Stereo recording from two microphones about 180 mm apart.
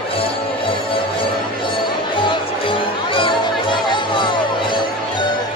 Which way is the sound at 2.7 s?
30° left (ahead or behind).